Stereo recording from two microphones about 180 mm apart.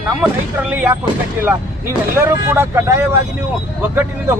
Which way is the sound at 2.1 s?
15° right (ahead or behind).